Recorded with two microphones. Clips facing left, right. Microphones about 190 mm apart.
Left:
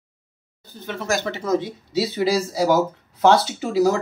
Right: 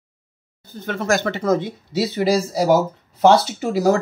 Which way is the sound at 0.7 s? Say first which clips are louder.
Right 4 dB; 50° right (ahead or behind).